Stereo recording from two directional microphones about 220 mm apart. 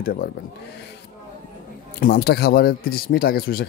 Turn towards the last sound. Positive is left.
turn(degrees=45)  # may be behind; listen again after turning